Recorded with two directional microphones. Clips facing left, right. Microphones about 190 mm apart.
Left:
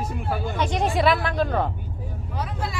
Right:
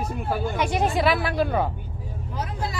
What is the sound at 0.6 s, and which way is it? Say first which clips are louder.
A woman's voice: left 1 dB; 5° right (ahead or behind).